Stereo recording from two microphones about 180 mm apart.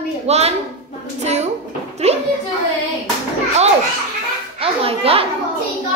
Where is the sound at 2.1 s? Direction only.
35° right (ahead or behind).